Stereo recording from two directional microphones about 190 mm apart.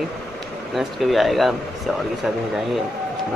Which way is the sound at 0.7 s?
Centre (ahead or behind).